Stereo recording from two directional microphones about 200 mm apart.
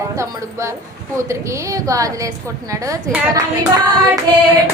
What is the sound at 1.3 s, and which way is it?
Speech, 15° right (ahead or behind).